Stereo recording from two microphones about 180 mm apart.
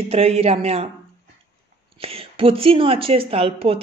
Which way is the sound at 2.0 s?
30° right (ahead or behind).